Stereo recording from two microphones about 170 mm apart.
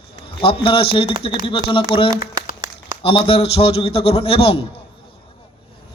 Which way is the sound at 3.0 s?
35° left (ahead or behind).